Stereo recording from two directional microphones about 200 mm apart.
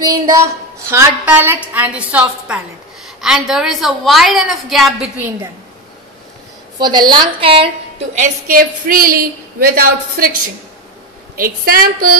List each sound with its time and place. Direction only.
0.0 s a woman's voice: 20° right (ahead or behind)
6.8 s a woman's voice: 20° right (ahead or behind); by 10.3 s 45° right (ahead or behind)
11.3 s a woman's voice: 45° right (ahead or behind)